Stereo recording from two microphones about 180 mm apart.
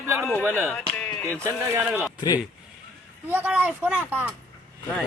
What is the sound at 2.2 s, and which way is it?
Speech, 20° left (ahead or behind).